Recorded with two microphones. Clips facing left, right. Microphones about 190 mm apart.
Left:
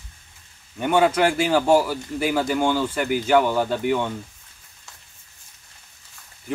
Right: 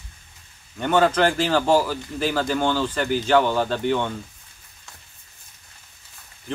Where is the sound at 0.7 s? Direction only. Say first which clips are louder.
Even; 10° left (ahead or behind).